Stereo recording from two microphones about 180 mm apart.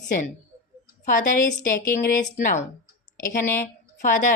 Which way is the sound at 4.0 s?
45° left (ahead or behind).